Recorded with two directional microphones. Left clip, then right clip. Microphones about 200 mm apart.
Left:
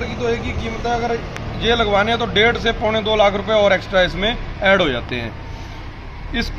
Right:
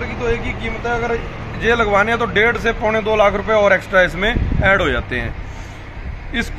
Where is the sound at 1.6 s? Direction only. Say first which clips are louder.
Right 2 dB; centre (ahead or behind).